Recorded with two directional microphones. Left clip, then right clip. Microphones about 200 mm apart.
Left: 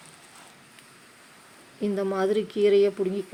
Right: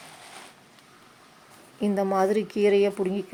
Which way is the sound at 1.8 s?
15° right (ahead or behind).